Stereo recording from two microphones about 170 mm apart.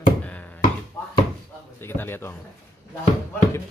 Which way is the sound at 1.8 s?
15° left (ahead or behind).